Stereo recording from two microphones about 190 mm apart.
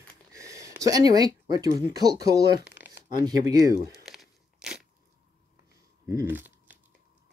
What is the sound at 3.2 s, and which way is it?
Speech, 20° right (ahead or behind).